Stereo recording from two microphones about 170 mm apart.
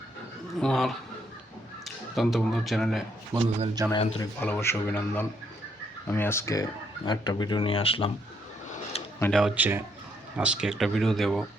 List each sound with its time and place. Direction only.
0.6 s speech: centre (ahead or behind)
3.3 s a man's voice: 20° right (ahead or behind)
4.2 s speech: 10° left (ahead or behind); by 8.1 s 35° left (ahead or behind)
8.7 s a sound: 40° left (ahead or behind)
9.4 s a man's voice: 10° right (ahead or behind)